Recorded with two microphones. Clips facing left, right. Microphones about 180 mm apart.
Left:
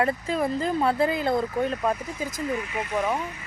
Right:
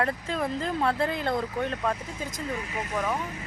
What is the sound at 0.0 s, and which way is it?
Speech, 5° left (ahead or behind).